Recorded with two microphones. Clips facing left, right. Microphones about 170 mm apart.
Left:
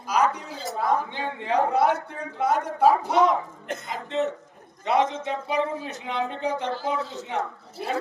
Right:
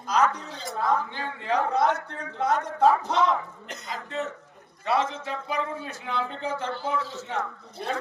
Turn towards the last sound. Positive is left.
turn(degrees=5)  # may be behind; listen again after turning